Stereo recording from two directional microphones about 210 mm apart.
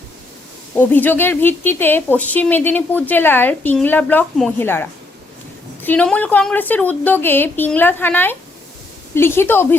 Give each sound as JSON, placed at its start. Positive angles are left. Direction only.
{"t": 0.8, "sound": "speech", "side_deg": 10}